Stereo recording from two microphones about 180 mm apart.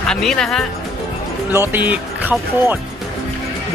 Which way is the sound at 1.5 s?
10° right (ahead or behind).